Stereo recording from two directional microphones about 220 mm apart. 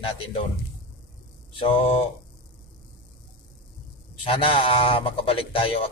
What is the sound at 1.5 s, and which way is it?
Speech, 25° left (ahead or behind).